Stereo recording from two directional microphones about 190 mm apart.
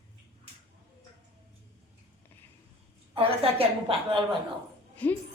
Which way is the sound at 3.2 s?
30° right (ahead or behind).